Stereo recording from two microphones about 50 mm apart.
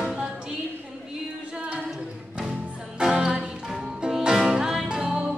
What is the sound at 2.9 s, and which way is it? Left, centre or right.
Music, centre.